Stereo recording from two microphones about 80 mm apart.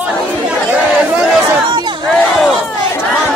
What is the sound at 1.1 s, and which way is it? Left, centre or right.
Crowd, right.